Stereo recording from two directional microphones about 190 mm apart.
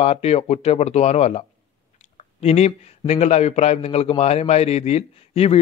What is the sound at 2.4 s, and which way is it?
A man's voice, 35° left (ahead or behind).